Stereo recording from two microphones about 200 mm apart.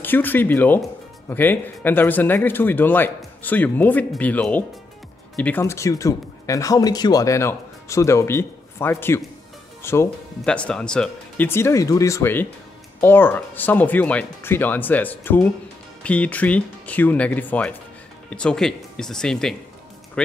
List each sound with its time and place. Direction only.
0.0 s speech: 10° left (ahead or behind)